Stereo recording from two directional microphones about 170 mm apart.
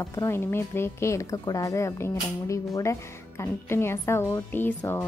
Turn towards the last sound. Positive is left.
turn(degrees=10)  # may be behind; listen again after turning